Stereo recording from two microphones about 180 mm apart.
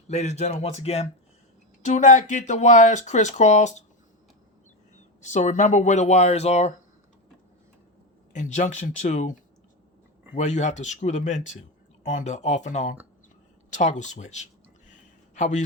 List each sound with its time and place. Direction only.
0.1 s speech: 40° left (ahead or behind)
5.2 s speech: 40° left (ahead or behind)
8.3 s speech: 40° left (ahead or behind)